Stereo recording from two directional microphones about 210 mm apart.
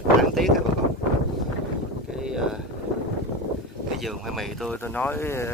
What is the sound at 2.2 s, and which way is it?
Speech, 5° right (ahead or behind).